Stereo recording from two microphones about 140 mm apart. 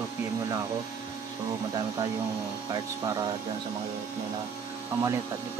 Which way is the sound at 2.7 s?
25° right (ahead or behind).